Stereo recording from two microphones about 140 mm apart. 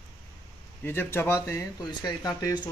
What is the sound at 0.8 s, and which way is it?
Speech, 15° left (ahead or behind).